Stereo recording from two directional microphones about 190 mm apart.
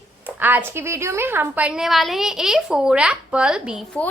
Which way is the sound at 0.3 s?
10° right (ahead or behind).